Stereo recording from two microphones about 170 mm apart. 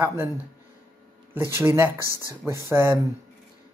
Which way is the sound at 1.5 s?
15° right (ahead or behind).